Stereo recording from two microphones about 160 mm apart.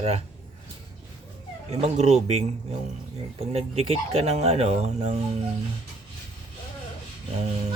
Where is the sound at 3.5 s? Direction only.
40° right (ahead or behind).